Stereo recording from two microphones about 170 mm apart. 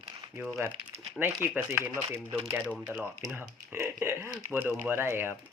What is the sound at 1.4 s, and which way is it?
Speech, 10° right (ahead or behind).